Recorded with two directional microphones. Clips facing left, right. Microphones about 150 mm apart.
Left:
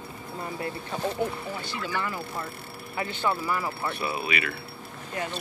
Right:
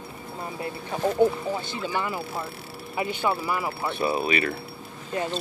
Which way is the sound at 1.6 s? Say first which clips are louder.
Right 2 dB; 20° right (ahead or behind).